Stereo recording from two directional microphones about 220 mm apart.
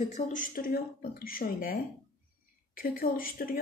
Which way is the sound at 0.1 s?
35° left (ahead or behind).